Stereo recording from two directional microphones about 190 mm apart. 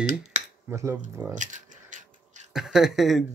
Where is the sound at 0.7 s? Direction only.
15° right (ahead or behind).